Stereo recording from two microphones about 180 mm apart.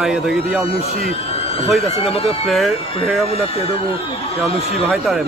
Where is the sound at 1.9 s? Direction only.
35° left (ahead or behind).